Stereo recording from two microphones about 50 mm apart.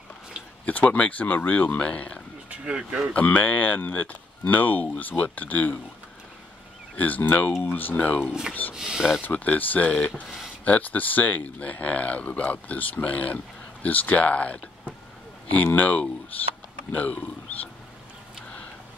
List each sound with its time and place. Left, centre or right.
0.7 s speech: left
2.6 s speech: centre
3.1 s speech: left
7.0 s speech: left
8.3 s speech: centre
9.2 s speech: left
10.2 s speech: centre
10.6 s speech: left